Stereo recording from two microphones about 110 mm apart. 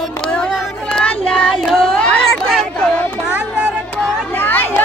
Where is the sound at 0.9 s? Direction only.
10° left (ahead or behind).